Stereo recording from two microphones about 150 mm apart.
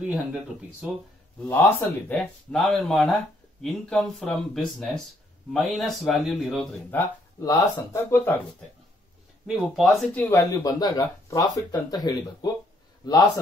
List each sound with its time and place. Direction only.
0.0 s speech: 5° right (ahead or behind)
1.4 s speech: 15° left (ahead or behind)
7.3 s speech: 20° left (ahead or behind)
9.5 s speech: centre (ahead or behind); by 12.4 s 30° left (ahead or behind)